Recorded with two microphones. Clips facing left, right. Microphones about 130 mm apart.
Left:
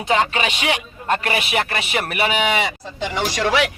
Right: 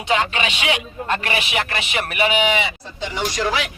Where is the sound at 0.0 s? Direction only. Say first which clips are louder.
Left 2 dB; 40° left (ahead or behind).